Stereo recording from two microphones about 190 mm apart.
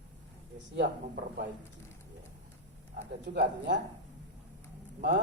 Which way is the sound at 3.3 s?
65° right (ahead or behind).